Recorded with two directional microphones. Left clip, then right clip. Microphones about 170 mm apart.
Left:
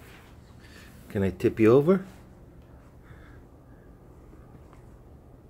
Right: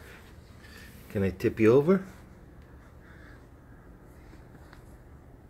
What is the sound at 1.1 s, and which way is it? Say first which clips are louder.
Speech: left 2 dB; 25° left (ahead or behind).